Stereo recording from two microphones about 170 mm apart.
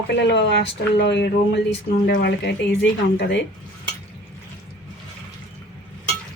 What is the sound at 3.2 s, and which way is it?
Speech, 90° left.